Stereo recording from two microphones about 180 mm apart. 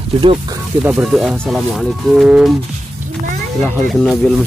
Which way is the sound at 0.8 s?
Centre (ahead or behind).